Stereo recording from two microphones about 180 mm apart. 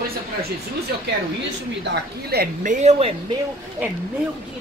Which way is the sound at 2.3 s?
45° right (ahead or behind).